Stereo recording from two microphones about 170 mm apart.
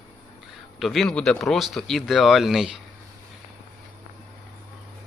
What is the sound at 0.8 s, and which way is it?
Speech, centre (ahead or behind).